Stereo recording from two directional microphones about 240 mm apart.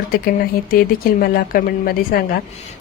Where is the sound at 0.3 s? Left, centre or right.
Left.